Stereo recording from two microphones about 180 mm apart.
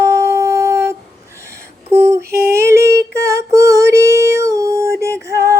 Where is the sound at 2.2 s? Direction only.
60° right (ahead or behind).